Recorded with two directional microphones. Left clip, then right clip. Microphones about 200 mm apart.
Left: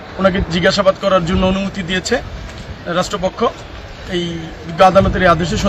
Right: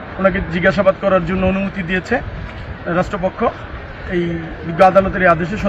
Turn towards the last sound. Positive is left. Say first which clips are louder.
# left 1 dB
turn(degrees=15)  # may be behind; listen again after turning